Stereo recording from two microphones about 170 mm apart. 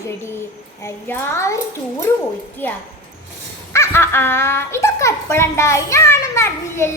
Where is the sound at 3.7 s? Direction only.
15° left (ahead or behind).